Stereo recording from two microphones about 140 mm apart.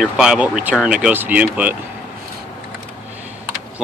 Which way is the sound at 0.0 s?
5° right (ahead or behind).